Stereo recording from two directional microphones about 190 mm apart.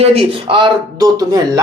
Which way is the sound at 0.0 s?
30° right (ahead or behind).